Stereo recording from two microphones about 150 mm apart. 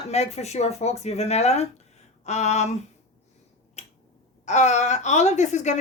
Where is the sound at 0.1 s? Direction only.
45° left (ahead or behind).